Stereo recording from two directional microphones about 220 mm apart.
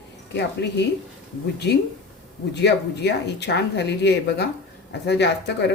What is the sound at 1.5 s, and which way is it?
Speech, 50° left (ahead or behind).